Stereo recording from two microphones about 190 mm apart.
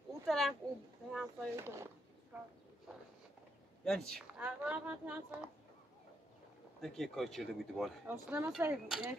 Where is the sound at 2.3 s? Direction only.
5° right (ahead or behind).